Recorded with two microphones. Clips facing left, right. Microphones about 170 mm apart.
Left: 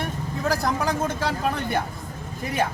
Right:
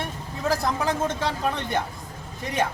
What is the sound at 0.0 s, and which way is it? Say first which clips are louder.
A man's voice: left 2 dB; centre (ahead or behind).